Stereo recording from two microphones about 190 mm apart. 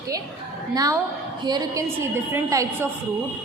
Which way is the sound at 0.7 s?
20° right (ahead or behind).